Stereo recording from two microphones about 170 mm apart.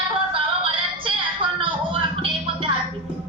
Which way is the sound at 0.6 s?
30° right (ahead or behind).